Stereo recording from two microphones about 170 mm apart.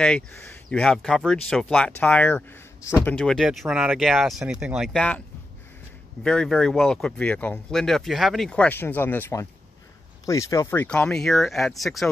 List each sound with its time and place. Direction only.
0.0 s speech: 5° left (ahead or behind)
3.2 s speech: centre (ahead or behind)
6.2 s speech: 5° left (ahead or behind)